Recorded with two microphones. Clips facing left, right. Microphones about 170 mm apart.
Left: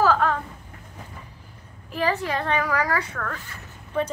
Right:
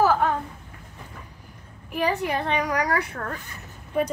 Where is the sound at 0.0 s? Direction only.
15° right (ahead or behind).